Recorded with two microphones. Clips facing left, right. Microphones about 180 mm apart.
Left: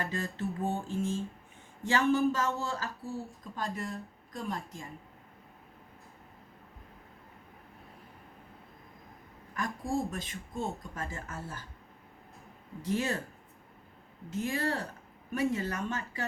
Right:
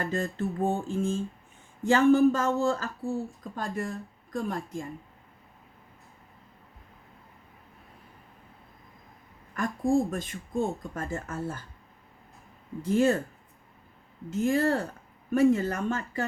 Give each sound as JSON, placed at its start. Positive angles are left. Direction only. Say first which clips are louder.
{"t": 0.1, "sound": "speech", "louder": "right 5 dB", "side_deg": -50}
{"t": 9.6, "sound": "speech", "louder": "right 8 dB", "side_deg": -50}
{"t": 12.8, "sound": "speech", "louder": "right 8 dB", "side_deg": -50}
{"t": 14.3, "sound": "speech", "louder": "right 7 dB", "side_deg": -45}